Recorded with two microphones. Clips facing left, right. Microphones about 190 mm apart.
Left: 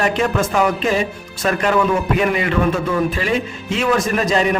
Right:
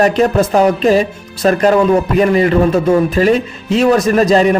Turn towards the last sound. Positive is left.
turn(degrees=-35)  # may be behind; listen again after turning